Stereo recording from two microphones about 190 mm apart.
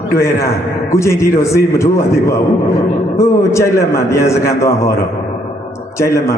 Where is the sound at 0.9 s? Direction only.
15° left (ahead or behind).